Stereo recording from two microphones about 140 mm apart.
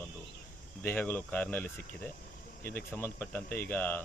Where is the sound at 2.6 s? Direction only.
90° left.